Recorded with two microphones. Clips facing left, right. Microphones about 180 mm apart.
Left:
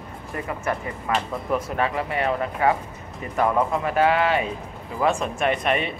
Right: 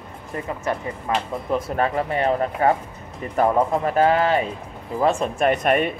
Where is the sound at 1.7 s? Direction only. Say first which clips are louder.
Right 2 dB; 45° right (ahead or behind).